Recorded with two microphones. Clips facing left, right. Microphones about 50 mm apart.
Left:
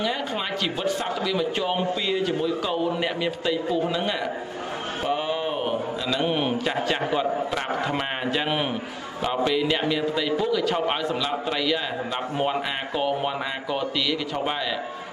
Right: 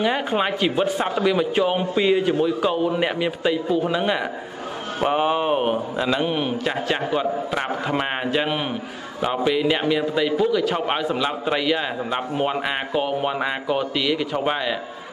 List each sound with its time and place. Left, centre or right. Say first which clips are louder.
0.0 s a man's voice: right 6 dB; right
1.5 s a man's voice: right 4 dB; centre
5.0 s a man's voice: right 7 dB; right
6.2 s a man's voice: right 1 dB; centre